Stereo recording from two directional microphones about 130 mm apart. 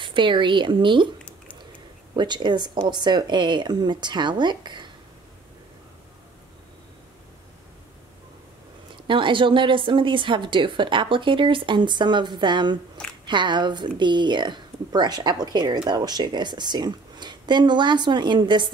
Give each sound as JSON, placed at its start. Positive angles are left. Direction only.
{"t": 0.0, "sound": "a woman's voice", "side_deg": -40}
{"t": 2.1, "sound": "a woman's voice", "side_deg": -35}
{"t": 8.9, "sound": "a woman's voice", "side_deg": -40}